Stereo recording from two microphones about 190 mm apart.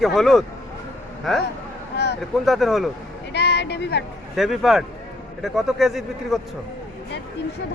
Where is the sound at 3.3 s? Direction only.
60° left (ahead or behind).